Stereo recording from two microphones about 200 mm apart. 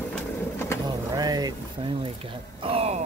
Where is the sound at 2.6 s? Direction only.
30° right (ahead or behind).